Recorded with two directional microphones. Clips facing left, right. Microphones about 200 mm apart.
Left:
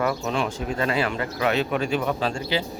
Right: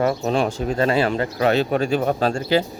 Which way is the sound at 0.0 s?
35° right (ahead or behind).